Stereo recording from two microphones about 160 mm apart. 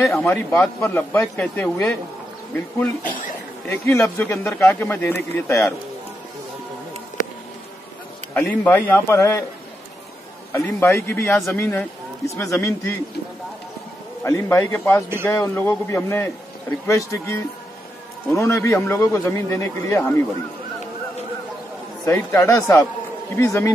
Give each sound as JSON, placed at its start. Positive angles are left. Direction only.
{"t": 0.0, "sound": "a man's voice", "side_deg": 5}
{"t": 8.4, "sound": "a man's voice", "side_deg": 15}
{"t": 10.5, "sound": "a man's voice", "side_deg": 15}
{"t": 14.2, "sound": "a man's voice", "side_deg": 15}
{"t": 22.0, "sound": "a man's voice", "side_deg": 15}